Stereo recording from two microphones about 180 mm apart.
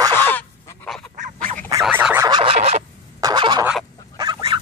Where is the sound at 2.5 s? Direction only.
35° right (ahead or behind).